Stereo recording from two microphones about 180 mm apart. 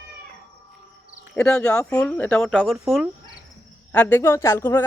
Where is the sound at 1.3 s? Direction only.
5° left (ahead or behind).